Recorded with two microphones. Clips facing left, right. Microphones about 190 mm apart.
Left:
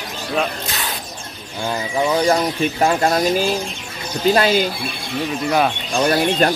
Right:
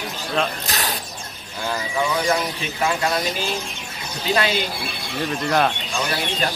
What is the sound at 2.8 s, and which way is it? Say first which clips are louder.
Speech: left 4 dB; 45° left (ahead or behind).